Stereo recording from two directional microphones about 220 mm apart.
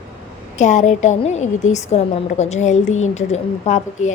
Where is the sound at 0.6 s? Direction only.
35° left (ahead or behind).